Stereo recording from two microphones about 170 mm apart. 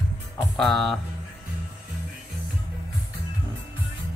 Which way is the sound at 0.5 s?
Centre (ahead or behind).